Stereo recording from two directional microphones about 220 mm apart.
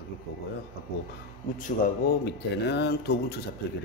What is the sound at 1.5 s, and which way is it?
A man's voice, 40° left (ahead or behind).